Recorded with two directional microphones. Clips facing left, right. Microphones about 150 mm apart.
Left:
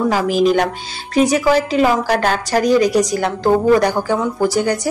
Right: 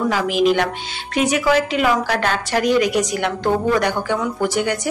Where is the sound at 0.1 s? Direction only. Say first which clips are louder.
Left 2 dB; 40° left (ahead or behind).